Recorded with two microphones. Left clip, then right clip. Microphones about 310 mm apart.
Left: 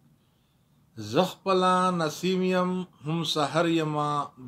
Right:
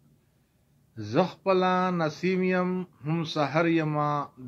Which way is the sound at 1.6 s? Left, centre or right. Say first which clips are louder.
Left 2 dB; centre.